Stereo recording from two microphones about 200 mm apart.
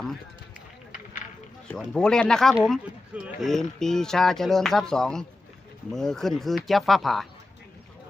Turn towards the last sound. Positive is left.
turn(degrees=0)  # may be behind; listen again after turning